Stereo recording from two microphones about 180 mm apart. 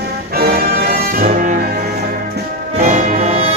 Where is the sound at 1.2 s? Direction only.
45° right (ahead or behind).